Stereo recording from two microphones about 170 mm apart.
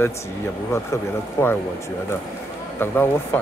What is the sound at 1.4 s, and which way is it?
Speech, 15° left (ahead or behind).